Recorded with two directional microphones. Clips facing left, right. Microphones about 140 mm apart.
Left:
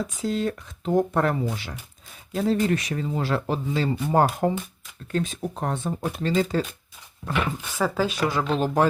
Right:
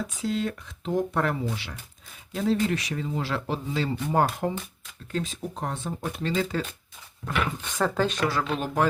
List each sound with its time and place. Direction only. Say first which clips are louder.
0.2 s speech: left 2 dB; 40° left (ahead or behind)
5.1 s speech: left 4 dB; 50° left (ahead or behind)
7.3 s speech: left 1 dB; 5° left (ahead or behind)
8.4 s speech: left 4 dB; 30° left (ahead or behind)